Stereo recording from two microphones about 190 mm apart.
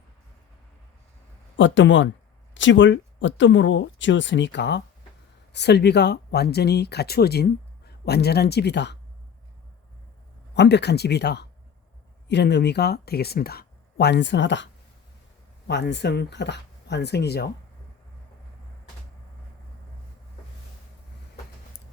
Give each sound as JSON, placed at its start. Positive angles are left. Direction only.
{"t": 1.5, "sound": "speech", "side_deg": 75}
{"t": 10.5, "sound": "speech", "side_deg": 65}